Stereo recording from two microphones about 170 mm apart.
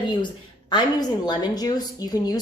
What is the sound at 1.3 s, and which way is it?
Speech, 25° left (ahead or behind).